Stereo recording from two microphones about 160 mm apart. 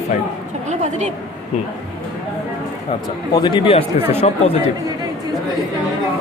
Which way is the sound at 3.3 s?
30° left (ahead or behind).